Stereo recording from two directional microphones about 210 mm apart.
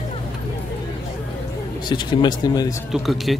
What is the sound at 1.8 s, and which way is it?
Speech, 20° left (ahead or behind).